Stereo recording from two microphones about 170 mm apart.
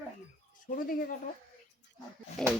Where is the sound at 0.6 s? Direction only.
60° left (ahead or behind).